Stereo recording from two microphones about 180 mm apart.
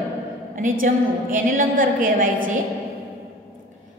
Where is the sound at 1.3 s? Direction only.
50° right (ahead or behind).